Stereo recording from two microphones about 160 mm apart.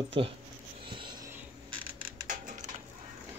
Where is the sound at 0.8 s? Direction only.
30° right (ahead or behind).